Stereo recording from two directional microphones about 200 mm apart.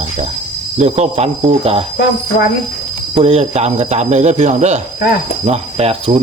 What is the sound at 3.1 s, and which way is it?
A man's voice, 30° right (ahead or behind).